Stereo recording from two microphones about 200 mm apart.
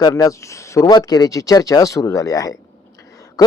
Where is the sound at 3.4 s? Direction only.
15° left (ahead or behind).